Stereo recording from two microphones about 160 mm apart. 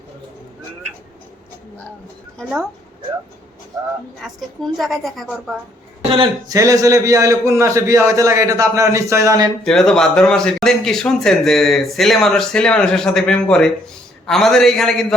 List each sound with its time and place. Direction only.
4.2 s a man's voice: centre (ahead or behind)
6.1 s speech: 35° right (ahead or behind)
6.5 s a man's voice: 20° right (ahead or behind)
9.6 s a man's voice: 5° left (ahead or behind)